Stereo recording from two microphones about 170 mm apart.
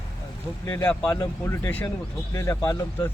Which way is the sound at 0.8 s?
10° left (ahead or behind).